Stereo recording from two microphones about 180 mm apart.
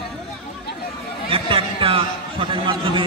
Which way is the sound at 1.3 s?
30° right (ahead or behind).